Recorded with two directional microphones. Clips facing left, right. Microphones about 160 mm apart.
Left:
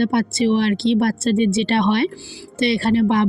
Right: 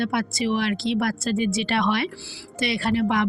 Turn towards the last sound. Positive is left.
turn(degrees=30)  # may be behind; listen again after turning